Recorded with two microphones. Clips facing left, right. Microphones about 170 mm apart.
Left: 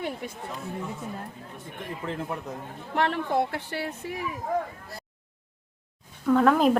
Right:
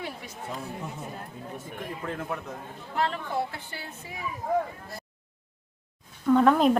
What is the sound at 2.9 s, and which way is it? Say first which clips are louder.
A woman's voice: left 4 dB; 70° left (ahead or behind).